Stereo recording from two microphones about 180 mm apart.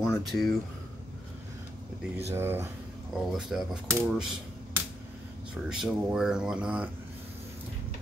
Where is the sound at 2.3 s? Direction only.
15° right (ahead or behind).